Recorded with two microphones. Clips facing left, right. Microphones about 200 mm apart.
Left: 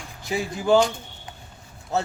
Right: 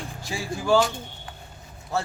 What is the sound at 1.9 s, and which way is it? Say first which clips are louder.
Speech: left 2 dB; 20° left (ahead or behind).